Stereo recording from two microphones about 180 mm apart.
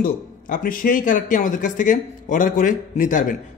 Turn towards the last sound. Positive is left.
turn(degrees=45)  # may be behind; listen again after turning